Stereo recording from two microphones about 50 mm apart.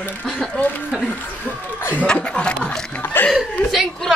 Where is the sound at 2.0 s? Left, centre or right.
Left.